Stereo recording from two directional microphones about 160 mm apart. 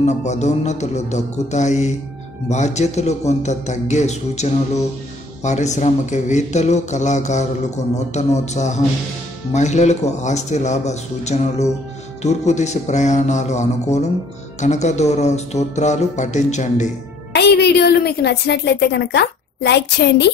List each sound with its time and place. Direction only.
0.0 s a man's voice: 45° left (ahead or behind)
17.3 s a woman's voice: 90° left